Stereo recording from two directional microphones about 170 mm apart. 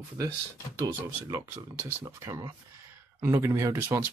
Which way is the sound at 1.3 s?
20° right (ahead or behind).